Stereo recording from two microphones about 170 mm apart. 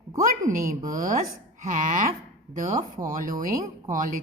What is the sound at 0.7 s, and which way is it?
Speech, 50° right (ahead or behind).